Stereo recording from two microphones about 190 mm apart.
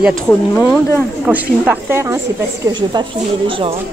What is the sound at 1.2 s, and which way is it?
Speech, 10° right (ahead or behind).